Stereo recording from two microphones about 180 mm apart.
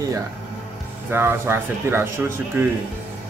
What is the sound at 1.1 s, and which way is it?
Speech, 15° right (ahead or behind).